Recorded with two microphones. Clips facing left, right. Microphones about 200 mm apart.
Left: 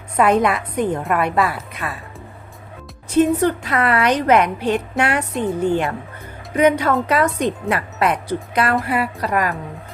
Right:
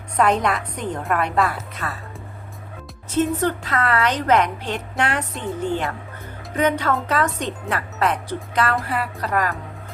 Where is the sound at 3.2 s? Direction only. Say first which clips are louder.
Left 5 dB; 10° left (ahead or behind).